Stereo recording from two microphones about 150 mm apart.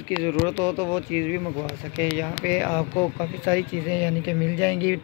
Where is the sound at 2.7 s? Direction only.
15° left (ahead or behind).